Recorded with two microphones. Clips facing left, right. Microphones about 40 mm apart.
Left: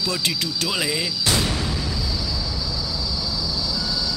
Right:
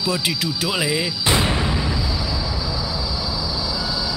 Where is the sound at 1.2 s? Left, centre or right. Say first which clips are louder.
Right 3 dB; right.